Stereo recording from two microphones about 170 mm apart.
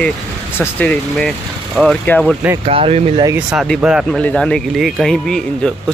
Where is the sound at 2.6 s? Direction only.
35° right (ahead or behind).